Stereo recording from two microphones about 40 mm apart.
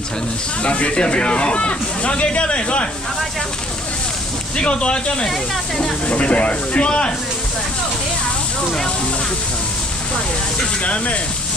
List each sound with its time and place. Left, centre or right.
0.6 s speech: left
4.6 s speech: left
6.0 s speech: left
10.8 s speech: left